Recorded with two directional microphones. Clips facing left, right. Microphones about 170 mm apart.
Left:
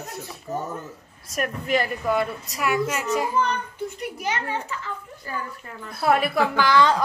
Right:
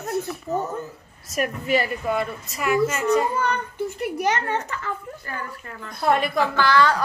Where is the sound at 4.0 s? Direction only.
45° right (ahead or behind).